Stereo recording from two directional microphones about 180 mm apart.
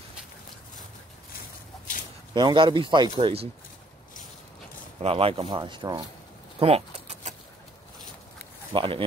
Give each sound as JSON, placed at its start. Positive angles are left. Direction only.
{"t": 2.3, "sound": "speech", "side_deg": -25}
{"t": 5.0, "sound": "speech", "side_deg": -30}
{"t": 6.6, "sound": "bird", "side_deg": -35}
{"t": 8.7, "sound": "speech", "side_deg": -30}